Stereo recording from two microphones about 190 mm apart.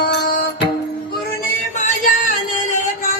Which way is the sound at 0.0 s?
55° left (ahead or behind).